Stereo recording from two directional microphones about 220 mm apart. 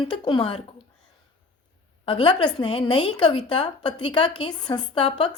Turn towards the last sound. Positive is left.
turn(degrees=25)  # may be behind; listen again after turning